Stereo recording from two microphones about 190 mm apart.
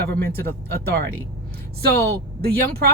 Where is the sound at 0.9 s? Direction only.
55° right (ahead or behind).